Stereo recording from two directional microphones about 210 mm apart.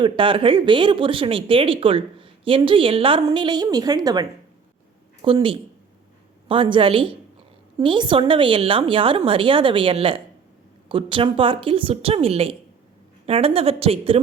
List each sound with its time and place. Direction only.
0.0 s speech: 25° right (ahead or behind)